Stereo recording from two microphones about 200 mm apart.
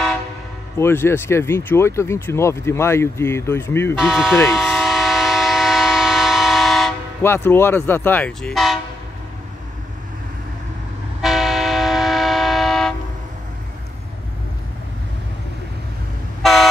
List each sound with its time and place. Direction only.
0.7 s speech: 10° left (ahead or behind)
4.0 s speech: centre (ahead or behind)
4.5 s train: centre (ahead or behind)
7.2 s speech: 10° left (ahead or behind)
11.1 s train: centre (ahead or behind)